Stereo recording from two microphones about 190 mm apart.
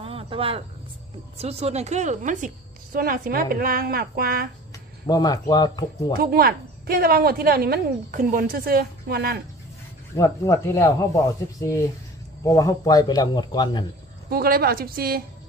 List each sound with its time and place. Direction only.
0.0 s a sound: 30° right (ahead or behind)
1.4 s a woman's voice: 35° right (ahead or behind); by 4.5 s 50° right (ahead or behind)
5.0 s a man's voice: 20° left (ahead or behind)
6.1 s a woman's voice: 50° right (ahead or behind)
10.1 s a man's voice: 15° left (ahead or behind)
14.3 s a woman's voice: 55° right (ahead or behind)